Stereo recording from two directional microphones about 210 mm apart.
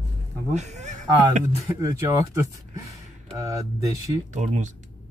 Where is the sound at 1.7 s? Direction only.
15° right (ahead or behind).